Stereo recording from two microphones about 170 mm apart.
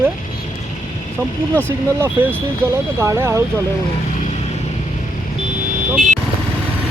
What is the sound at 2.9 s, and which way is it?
Speech, 15° right (ahead or behind).